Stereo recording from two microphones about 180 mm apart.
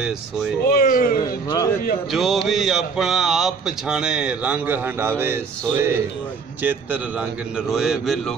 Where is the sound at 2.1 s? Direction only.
Centre (ahead or behind).